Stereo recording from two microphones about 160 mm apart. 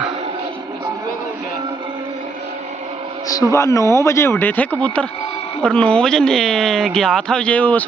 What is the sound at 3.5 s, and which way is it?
Speech, 20° left (ahead or behind).